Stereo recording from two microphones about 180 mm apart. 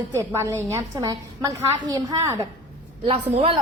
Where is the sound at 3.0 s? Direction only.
35° right (ahead or behind).